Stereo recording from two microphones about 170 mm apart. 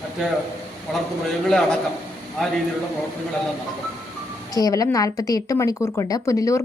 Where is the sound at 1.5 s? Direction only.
5° left (ahead or behind).